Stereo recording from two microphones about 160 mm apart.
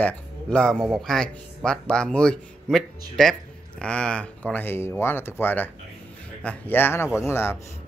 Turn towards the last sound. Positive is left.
turn(degrees=15)  # may be behind; listen again after turning